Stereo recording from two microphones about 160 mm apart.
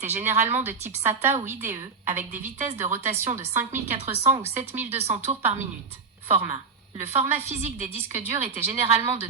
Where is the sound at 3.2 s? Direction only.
45° right (ahead or behind).